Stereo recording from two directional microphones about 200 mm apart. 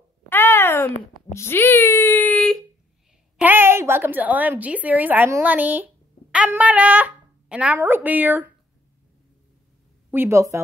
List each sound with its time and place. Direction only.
0.3 s a sound: 10° left (ahead or behind)
3.3 s a woman's voice: 10° right (ahead or behind)
10.1 s a woman's voice: 15° right (ahead or behind)